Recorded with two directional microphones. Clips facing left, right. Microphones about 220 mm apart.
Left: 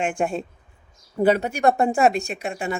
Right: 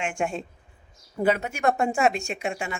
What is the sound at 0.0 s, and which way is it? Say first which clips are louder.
Speech: left 4 dB; 35° left (ahead or behind).